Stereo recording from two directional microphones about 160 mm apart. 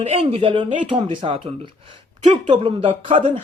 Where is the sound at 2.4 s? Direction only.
35° right (ahead or behind).